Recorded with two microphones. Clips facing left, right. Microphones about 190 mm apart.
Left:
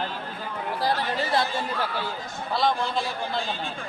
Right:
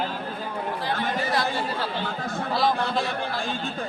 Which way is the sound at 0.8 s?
35° left (ahead or behind).